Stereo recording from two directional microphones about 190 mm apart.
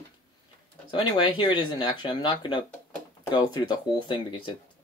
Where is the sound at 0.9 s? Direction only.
25° left (ahead or behind).